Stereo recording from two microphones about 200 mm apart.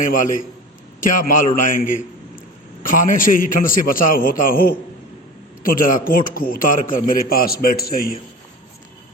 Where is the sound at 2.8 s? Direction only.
40° left (ahead or behind).